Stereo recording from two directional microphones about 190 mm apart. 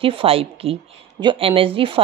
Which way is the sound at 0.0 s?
30° right (ahead or behind).